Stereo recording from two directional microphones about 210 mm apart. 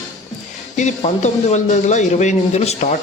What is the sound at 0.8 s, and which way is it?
A man's voice, 35° left (ahead or behind).